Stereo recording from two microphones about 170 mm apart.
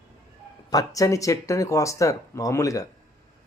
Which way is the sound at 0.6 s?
20° left (ahead or behind).